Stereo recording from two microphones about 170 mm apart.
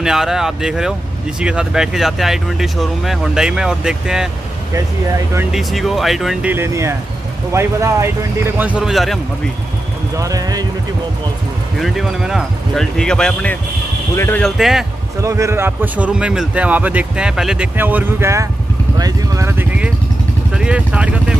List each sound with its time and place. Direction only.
0.0 s speech: 5° right (ahead or behind)
5.5 s speech: centre (ahead or behind)
6.5 s speech: 15° right (ahead or behind); by 9.2 s centre (ahead or behind)
10.1 s speech: 20° right (ahead or behind)
11.8 s speech: centre (ahead or behind); by 14.4 s 15° left (ahead or behind)
14.4 s speech: centre (ahead or behind)
15.2 s speech: 20° right (ahead or behind)